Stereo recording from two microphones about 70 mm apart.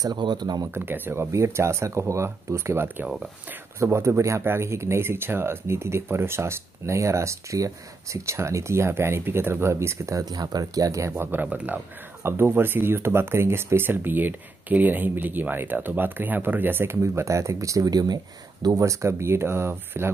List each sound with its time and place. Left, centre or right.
0.0 s speech: right
0.7 s speech: right
1.3 s speech: right
10.2 s speech: right
11.4 s speech: right
12.2 s speech: right
18.9 s speech: right